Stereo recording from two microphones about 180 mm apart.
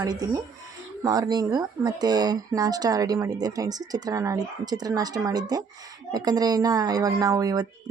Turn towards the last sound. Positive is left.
turn(degrees=-20)  # may be behind; listen again after turning